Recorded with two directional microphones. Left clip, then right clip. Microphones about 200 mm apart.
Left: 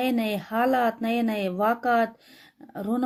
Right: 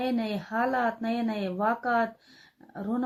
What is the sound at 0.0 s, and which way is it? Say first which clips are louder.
A woman's voice: left 4 dB; 40° left (ahead or behind).